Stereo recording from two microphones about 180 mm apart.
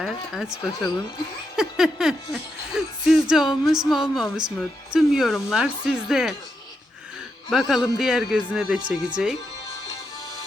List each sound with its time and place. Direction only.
0.0 s speech: 5° right (ahead or behind)
4.4 s speech: 25° right (ahead or behind)
4.9 s speech: centre (ahead or behind)
7.5 s speech: centre (ahead or behind)